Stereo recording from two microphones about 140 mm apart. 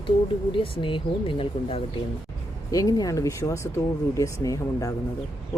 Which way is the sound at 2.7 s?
25° left (ahead or behind).